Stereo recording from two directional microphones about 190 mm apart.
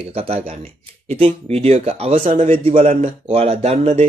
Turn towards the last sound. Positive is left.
turn(degrees=-35)  # may be behind; listen again after turning